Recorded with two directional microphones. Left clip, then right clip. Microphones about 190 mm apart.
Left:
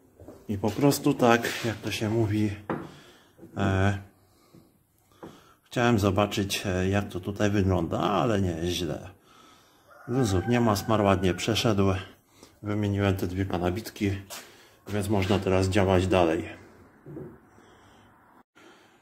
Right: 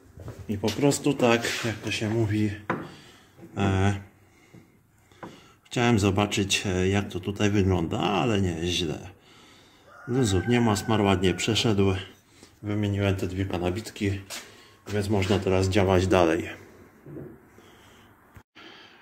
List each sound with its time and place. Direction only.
0.7 s speech: 15° left (ahead or behind)
5.7 s speech: 5° right (ahead or behind)
10.1 s speech: centre (ahead or behind)